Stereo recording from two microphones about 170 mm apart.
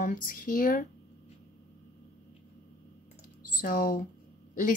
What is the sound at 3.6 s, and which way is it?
Speech, 60° left (ahead or behind).